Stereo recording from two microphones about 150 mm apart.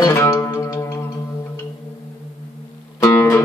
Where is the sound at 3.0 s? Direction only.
15° left (ahead or behind).